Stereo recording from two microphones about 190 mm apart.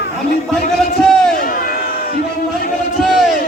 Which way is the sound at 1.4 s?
45° left (ahead or behind).